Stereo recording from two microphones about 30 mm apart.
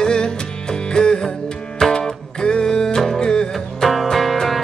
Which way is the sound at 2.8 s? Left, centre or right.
Centre.